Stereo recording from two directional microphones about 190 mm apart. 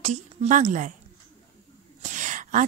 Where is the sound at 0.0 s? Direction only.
35° right (ahead or behind).